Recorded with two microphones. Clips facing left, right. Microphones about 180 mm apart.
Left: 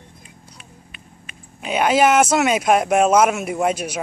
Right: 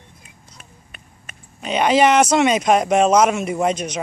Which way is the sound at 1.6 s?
5° left (ahead or behind).